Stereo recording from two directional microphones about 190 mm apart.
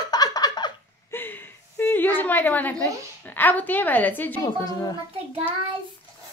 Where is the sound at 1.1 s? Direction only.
10° left (ahead or behind).